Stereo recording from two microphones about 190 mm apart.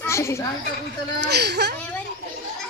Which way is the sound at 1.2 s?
60° right (ahead or behind).